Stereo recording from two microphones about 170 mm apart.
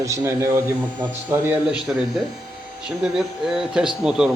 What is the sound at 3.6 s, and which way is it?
Speech, 5° right (ahead or behind).